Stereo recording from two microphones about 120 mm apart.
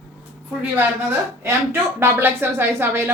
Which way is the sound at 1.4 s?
20° right (ahead or behind).